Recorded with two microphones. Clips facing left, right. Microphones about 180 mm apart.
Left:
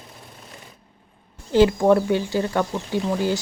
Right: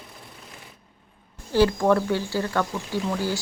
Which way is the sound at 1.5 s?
20° left (ahead or behind).